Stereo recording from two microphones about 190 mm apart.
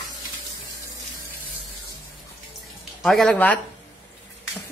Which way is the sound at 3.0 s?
Centre (ahead or behind).